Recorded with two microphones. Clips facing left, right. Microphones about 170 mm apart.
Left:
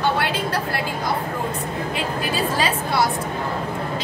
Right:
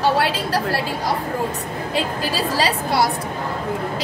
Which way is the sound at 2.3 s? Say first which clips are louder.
Right 2 dB; 35° right (ahead or behind).